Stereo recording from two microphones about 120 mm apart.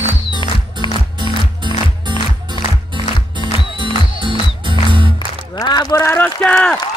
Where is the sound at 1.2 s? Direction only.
40° right (ahead or behind).